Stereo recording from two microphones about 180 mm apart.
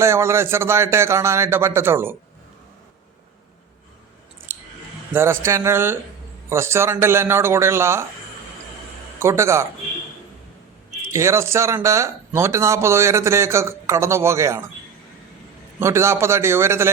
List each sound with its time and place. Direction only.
0.0 s speech: 15° right (ahead or behind)
4.5 s scissors: 10° right (ahead or behind)
5.1 s speech: 15° right (ahead or behind)
9.1 s speech: 15° right (ahead or behind)
11.1 s speech: 15° right (ahead or behind)
15.8 s speech: 15° right (ahead or behind)